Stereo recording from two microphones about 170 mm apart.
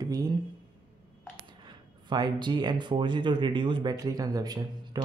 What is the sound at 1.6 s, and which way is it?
Speech, 25° right (ahead or behind).